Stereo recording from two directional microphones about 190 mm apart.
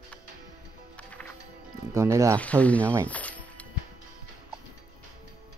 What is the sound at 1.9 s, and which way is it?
Speech, 15° right (ahead or behind).